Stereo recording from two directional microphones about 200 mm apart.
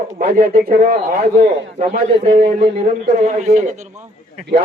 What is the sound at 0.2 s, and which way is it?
Speech, 50° right (ahead or behind).